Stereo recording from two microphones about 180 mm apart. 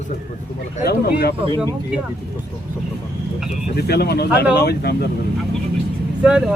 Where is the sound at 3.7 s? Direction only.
60° left (ahead or behind).